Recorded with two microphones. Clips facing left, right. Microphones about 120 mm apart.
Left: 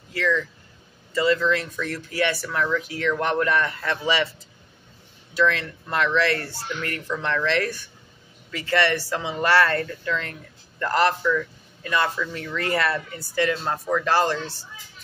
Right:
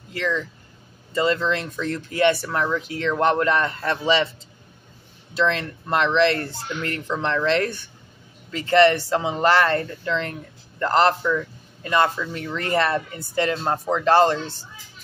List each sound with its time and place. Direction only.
0.1 s a man's voice: 25° right (ahead or behind)
5.3 s a man's voice: 25° right (ahead or behind)